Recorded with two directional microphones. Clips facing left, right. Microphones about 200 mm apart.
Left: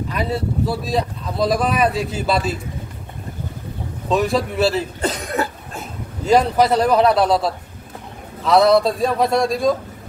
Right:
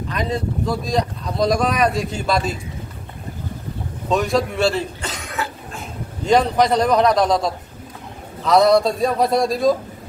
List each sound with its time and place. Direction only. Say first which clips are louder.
0.1 s speech: right 1 dB; 5° left (ahead or behind)
4.1 s speech: even; centre (ahead or behind)
5.0 s cough: left 6 dB; 35° left (ahead or behind)
6.2 s speech: left 1 dB; 5° left (ahead or behind)